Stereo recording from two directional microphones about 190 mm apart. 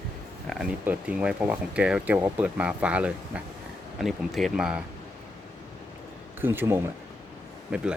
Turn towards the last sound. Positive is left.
turn(degrees=-5)  # may be behind; listen again after turning